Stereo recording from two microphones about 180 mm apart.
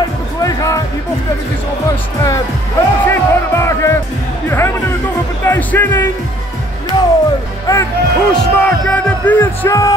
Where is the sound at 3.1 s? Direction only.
15° left (ahead or behind).